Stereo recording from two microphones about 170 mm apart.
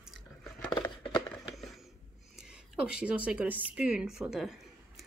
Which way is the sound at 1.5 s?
Centre (ahead or behind).